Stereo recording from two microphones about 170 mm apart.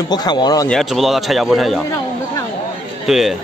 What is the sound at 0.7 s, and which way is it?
A man's voice, centre (ahead or behind).